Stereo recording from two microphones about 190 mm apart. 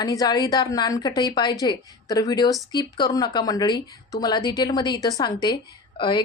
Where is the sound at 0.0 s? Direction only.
20° left (ahead or behind).